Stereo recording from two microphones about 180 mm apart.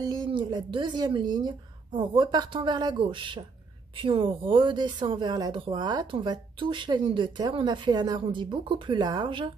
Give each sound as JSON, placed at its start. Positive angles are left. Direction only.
{"t": 0.0, "sound": "speech", "side_deg": -25}